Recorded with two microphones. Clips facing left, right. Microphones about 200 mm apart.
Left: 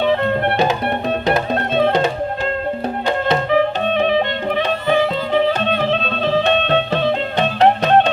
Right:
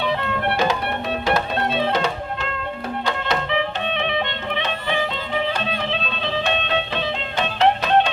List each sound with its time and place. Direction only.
0.0 s music: 50° left (ahead or behind)
3.2 s music: 45° left (ahead or behind)